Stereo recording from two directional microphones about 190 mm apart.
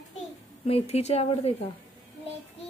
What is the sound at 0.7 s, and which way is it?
Speech, 35° left (ahead or behind).